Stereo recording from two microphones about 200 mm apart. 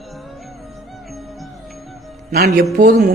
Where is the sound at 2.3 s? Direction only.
50° right (ahead or behind).